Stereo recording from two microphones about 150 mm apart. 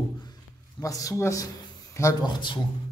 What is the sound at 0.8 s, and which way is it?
Speech, 20° left (ahead or behind).